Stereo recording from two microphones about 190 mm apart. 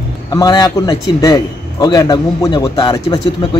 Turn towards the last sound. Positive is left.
turn(degrees=20)  # may be behind; listen again after turning